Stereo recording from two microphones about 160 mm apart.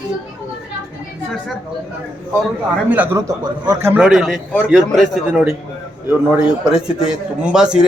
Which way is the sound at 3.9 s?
5° right (ahead or behind).